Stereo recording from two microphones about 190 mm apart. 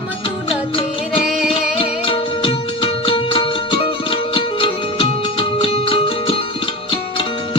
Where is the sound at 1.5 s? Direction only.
25° left (ahead or behind).